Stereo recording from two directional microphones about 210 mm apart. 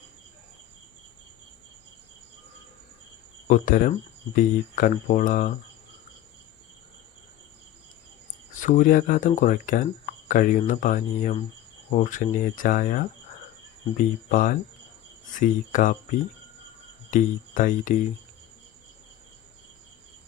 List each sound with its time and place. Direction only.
3.4 s speech: 40° left (ahead or behind)
8.5 s speech: 35° left (ahead or behind)
17.1 s speech: 40° left (ahead or behind)